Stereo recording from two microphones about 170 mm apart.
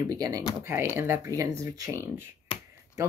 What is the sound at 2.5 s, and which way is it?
Finger snapping, 35° left (ahead or behind).